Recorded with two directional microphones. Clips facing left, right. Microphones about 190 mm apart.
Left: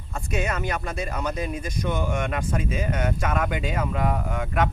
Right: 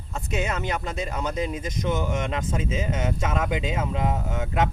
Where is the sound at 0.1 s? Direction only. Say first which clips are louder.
Even; 20° right (ahead or behind).